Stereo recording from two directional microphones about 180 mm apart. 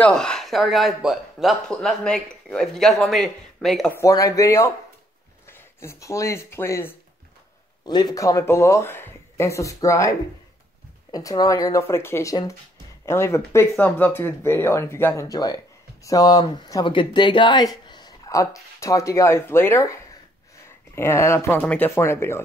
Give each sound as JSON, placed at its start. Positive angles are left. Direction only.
{"t": 0.0, "sound": "speech", "side_deg": 5}
{"t": 3.9, "sound": "speech", "side_deg": 15}